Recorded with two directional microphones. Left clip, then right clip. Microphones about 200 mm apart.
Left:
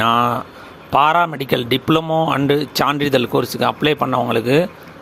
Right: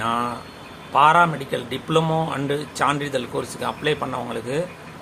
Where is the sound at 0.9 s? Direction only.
50° left (ahead or behind).